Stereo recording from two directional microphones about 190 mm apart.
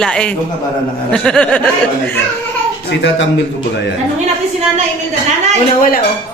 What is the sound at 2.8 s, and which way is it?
Speech, 65° left (ahead or behind).